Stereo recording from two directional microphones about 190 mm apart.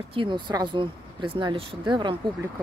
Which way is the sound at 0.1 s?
25° right (ahead or behind).